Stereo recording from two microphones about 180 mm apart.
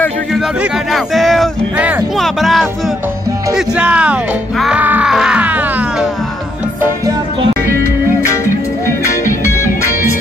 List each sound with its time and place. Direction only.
0.6 s speech: centre (ahead or behind)
8.8 s music: 15° left (ahead or behind)